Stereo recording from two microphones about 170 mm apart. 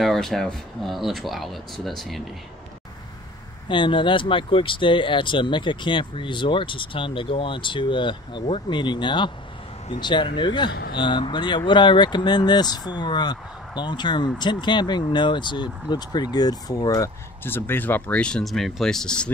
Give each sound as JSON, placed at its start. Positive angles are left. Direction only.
{"t": 0.0, "sound": "speech", "side_deg": 0}
{"t": 3.6, "sound": "speech", "side_deg": 30}
{"t": 10.7, "sound": "speech", "side_deg": 75}
{"t": 11.0, "sound": "speech", "side_deg": 25}